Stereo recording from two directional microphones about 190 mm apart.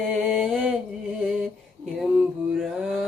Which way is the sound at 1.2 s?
5° right (ahead or behind).